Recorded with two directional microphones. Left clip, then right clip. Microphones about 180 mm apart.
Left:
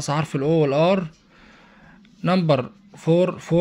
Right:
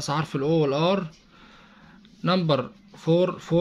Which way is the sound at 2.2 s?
20° left (ahead or behind).